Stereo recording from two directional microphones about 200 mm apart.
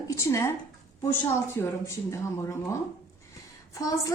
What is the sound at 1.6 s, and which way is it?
Speech, 15° left (ahead or behind).